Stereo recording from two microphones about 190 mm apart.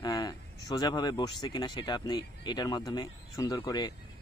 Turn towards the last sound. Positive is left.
turn(degrees=20)  # may be behind; listen again after turning